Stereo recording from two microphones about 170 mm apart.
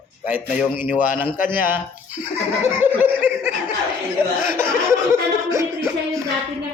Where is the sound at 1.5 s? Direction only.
10° right (ahead or behind).